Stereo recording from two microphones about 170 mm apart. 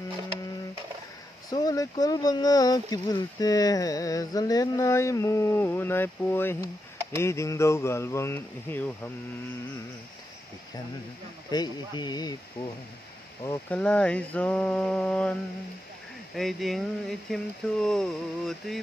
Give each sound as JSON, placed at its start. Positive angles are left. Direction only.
{"t": 1.5, "sound": "speech", "side_deg": 20}
{"t": 11.5, "sound": "speech", "side_deg": 25}
{"t": 13.4, "sound": "speech", "side_deg": 15}
{"t": 13.7, "sound": "speech", "side_deg": 5}
{"t": 16.3, "sound": "speech", "side_deg": 0}